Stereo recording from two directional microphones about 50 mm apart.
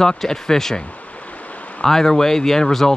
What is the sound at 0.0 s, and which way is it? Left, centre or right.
Speech, centre.